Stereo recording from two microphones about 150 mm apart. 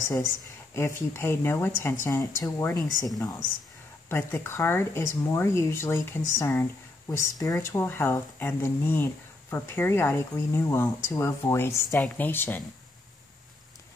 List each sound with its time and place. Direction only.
0.0 s speech: 20° left (ahead or behind)
4.1 s speech: 15° left (ahead or behind)